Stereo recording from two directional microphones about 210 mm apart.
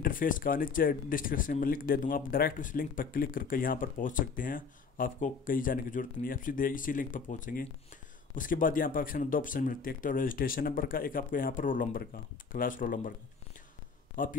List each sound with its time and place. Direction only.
0.0 s speech: 40° left (ahead or behind)
14.2 s speech: 40° left (ahead or behind)